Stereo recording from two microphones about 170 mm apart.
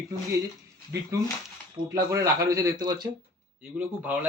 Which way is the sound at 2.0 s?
20° right (ahead or behind).